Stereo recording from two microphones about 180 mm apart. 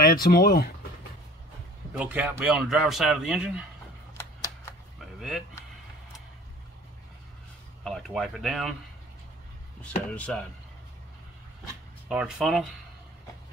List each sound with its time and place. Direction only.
0.0 s speech: 55° left (ahead or behind)
2.0 s speech: 10° right (ahead or behind)
5.0 s vehicle: 5° right (ahead or behind)
7.8 s speech: centre (ahead or behind)
9.8 s speech: 5° left (ahead or behind)
12.1 s speech: 5° right (ahead or behind)